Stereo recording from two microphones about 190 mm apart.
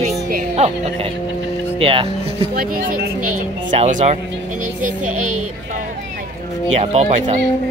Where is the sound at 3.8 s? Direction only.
40° right (ahead or behind).